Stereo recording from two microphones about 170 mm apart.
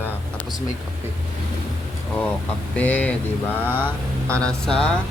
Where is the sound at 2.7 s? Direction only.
10° left (ahead or behind).